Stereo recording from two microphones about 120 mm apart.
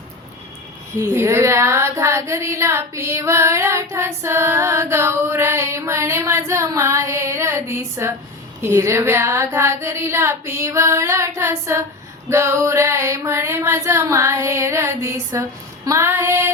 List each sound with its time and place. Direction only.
0.9 s speech: 25° right (ahead or behind)